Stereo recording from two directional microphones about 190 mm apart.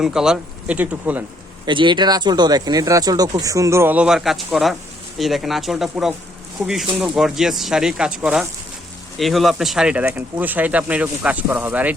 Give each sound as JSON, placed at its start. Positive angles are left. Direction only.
{"t": 0.0, "sound": "speech", "side_deg": -5}
{"t": 1.6, "sound": "speech", "side_deg": -25}